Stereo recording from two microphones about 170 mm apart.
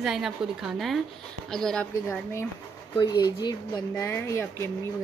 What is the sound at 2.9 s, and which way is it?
Speech, 25° left (ahead or behind).